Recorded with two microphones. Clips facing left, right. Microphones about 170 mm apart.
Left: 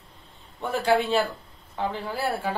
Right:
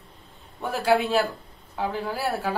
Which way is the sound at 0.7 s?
5° right (ahead or behind).